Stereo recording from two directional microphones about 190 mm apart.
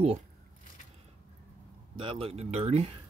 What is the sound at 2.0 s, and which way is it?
Speech, 30° right (ahead or behind).